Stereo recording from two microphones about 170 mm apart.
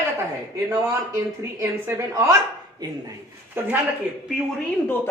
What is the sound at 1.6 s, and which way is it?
Speech, 15° right (ahead or behind).